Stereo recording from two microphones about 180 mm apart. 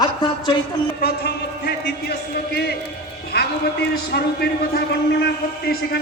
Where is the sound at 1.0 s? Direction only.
65° left (ahead or behind).